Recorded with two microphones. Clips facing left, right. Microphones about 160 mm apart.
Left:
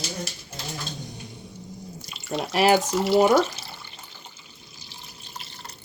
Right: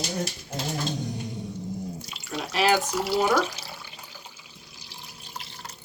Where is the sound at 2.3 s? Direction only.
30° left (ahead or behind).